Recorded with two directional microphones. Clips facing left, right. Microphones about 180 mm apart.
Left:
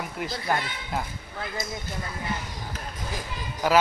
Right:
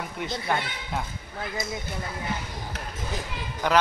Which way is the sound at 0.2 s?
Centre (ahead or behind).